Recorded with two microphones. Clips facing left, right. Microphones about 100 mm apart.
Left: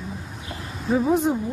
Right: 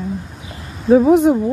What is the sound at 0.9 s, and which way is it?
Speech, 90° right.